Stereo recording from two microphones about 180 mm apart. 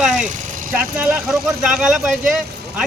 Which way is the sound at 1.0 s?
Centre (ahead or behind).